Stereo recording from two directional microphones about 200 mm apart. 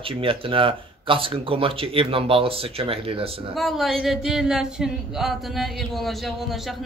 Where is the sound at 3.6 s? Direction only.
Centre (ahead or behind).